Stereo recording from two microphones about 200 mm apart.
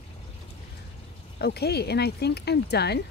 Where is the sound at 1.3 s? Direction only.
55° left (ahead or behind).